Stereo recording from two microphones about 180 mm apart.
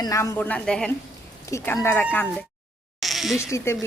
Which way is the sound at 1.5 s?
15° left (ahead or behind).